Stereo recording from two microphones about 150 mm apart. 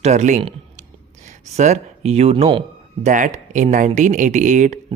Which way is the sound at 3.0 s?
55° right (ahead or behind).